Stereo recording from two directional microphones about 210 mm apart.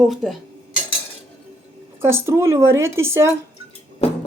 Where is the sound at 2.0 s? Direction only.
10° right (ahead or behind).